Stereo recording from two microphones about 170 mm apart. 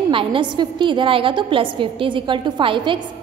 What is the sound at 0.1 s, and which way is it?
A woman's voice, 30° right (ahead or behind).